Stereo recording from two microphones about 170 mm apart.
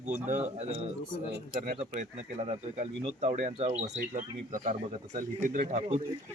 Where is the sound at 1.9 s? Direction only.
45° right (ahead or behind).